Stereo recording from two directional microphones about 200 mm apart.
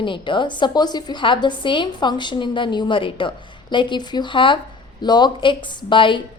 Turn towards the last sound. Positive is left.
turn(degrees=25)  # may be behind; listen again after turning